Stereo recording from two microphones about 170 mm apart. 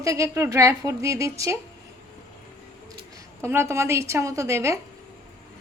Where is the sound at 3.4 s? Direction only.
15° right (ahead or behind).